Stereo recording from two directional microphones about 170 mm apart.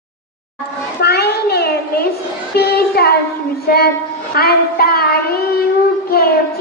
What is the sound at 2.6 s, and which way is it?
Speech, 65° left (ahead or behind).